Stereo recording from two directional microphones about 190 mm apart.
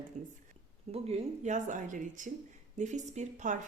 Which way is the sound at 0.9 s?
35° right (ahead or behind).